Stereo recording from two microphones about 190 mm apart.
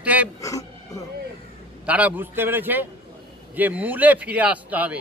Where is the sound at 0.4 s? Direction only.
15° left (ahead or behind).